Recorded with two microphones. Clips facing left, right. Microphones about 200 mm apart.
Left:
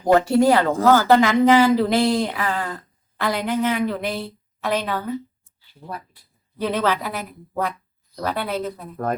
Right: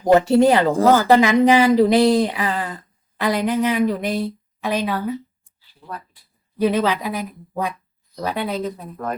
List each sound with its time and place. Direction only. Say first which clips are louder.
0.1 s speech: right 2 dB; 20° right (ahead or behind)
5.8 s speech: even; 45° left (ahead or behind)
6.6 s speech: right 3 dB; 10° right (ahead or behind)